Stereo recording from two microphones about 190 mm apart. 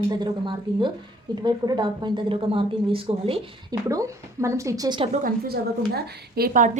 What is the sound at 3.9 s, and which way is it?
Speech, 15° right (ahead or behind).